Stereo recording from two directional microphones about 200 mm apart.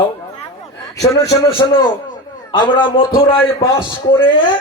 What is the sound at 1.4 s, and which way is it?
A man's voice, 20° left (ahead or behind).